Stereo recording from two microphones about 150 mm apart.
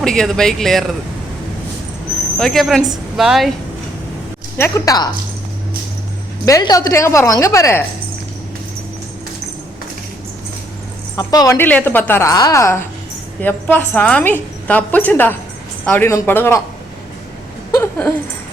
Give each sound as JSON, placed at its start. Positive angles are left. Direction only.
{"t": 0.0, "sound": "speech", "side_deg": 5}
{"t": 2.4, "sound": "speech", "side_deg": 0}
{"t": 4.5, "sound": "a woman's voice", "side_deg": 20}
{"t": 6.4, "sound": "a woman's voice", "side_deg": 25}
{"t": 11.2, "sound": "a woman's voice", "side_deg": 25}
{"t": 17.7, "sound": "a sound", "side_deg": 10}